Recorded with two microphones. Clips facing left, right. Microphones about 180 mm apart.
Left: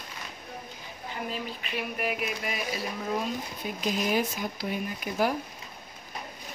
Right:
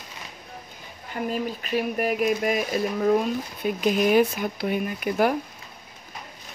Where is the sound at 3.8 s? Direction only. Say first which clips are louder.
Right 8 dB; 60° right (ahead or behind).